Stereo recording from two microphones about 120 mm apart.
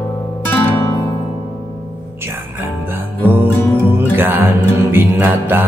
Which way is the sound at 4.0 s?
20° right (ahead or behind).